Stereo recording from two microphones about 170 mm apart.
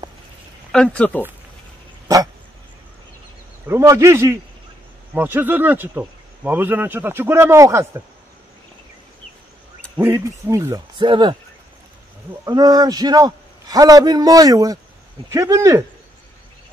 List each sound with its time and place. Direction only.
0.7 s speech: 5° left (ahead or behind)
3.6 s speech: 15° right (ahead or behind)
9.9 s a man's voice: 15° right (ahead or behind)
12.4 s a man's voice: 25° right (ahead or behind)